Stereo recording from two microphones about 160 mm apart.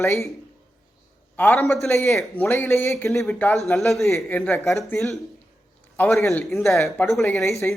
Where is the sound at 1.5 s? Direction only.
Centre (ahead or behind).